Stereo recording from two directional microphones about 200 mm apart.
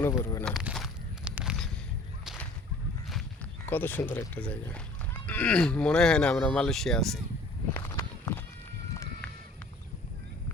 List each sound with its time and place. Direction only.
0.0 s speech: 10° left (ahead or behind)
0.5 s a sound: centre (ahead or behind)
2.2 s whip: centre (ahead or behind)
3.7 s speech: 10° left (ahead or behind)
7.8 s walk: 20° left (ahead or behind)